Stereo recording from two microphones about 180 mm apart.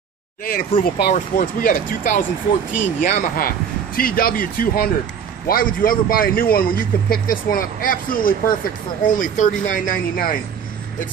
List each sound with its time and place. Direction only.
0.5 s speech: 60° left (ahead or behind)